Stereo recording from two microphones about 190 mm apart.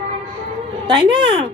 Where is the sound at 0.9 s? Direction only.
20° right (ahead or behind).